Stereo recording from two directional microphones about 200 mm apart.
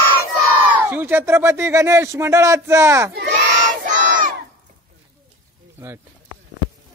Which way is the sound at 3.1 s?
55° right (ahead or behind).